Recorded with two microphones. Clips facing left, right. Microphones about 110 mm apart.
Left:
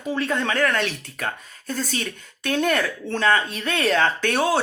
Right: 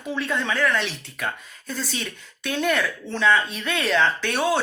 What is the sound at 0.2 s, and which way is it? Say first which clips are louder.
Speech: left 1 dB; 50° left (ahead or behind).